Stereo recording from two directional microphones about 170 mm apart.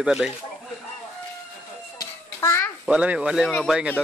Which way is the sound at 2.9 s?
5° right (ahead or behind).